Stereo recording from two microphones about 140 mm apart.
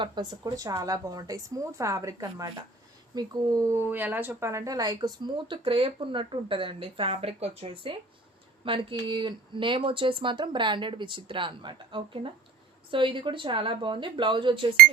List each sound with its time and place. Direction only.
0.0 s a woman's voice: 30° right (ahead or behind)